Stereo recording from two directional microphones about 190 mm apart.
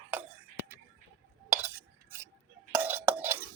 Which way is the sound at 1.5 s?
10° right (ahead or behind).